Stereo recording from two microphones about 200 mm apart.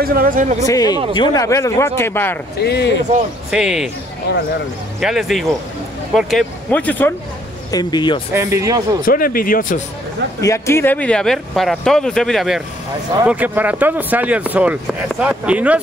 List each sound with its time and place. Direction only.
0.0 s speech: 45° right (ahead or behind)
0.7 s speech: 20° left (ahead or behind)
2.6 s speech: 55° left (ahead or behind)
3.4 s speech: 5° right (ahead or behind)
4.3 s speech: 55° left (ahead or behind)
5.0 s speech: centre (ahead or behind)
7.7 s speech: 20° left (ahead or behind)
8.3 s speech: 15° right (ahead or behind)
9.0 s speech: 45° left (ahead or behind)
10.4 s speech: 15° left (ahead or behind); by 15.8 s 5° right (ahead or behind)